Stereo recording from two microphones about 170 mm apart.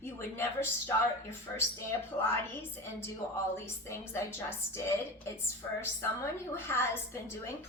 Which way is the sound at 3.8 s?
15° left (ahead or behind).